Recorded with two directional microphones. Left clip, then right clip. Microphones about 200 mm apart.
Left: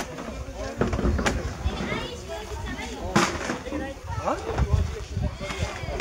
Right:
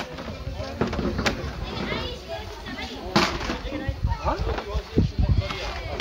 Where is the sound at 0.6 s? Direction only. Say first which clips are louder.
Even; 45° right (ahead or behind).